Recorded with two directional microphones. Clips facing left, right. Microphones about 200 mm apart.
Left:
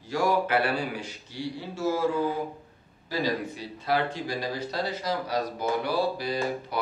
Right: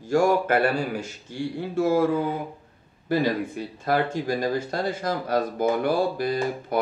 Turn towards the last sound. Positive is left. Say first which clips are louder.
# right 4 dB
turn(degrees=-50)  # may be behind; listen again after turning